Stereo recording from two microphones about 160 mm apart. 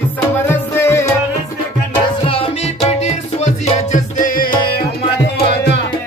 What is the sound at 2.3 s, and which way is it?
Music, 35° left (ahead or behind).